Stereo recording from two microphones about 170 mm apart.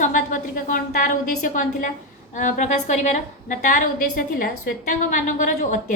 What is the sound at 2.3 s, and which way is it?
A woman's voice, 45° left (ahead or behind).